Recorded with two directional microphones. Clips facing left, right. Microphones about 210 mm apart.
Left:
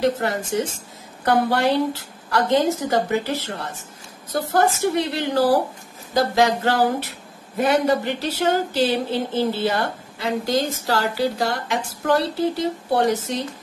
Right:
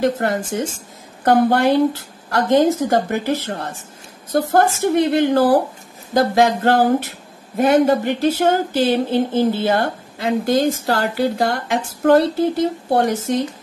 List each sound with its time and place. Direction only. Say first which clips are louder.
0.0 s speech: right 3 dB; 55° right (ahead or behind)